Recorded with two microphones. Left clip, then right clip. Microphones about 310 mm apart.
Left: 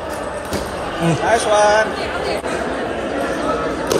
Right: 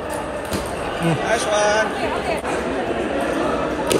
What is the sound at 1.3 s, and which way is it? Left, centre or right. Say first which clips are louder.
Speech: left 5 dB; left.